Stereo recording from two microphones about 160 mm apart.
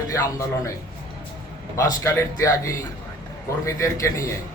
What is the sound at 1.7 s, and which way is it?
Speech, 20° left (ahead or behind).